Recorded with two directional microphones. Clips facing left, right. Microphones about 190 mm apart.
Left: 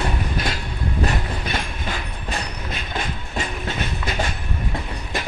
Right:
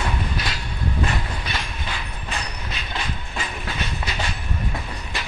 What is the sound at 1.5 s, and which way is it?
Train, 45° left (ahead or behind).